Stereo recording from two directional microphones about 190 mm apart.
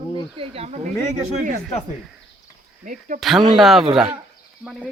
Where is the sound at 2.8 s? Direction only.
45° right (ahead or behind).